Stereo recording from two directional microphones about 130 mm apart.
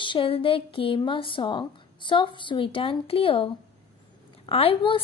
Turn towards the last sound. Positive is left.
turn(degrees=45)  # may be behind; listen again after turning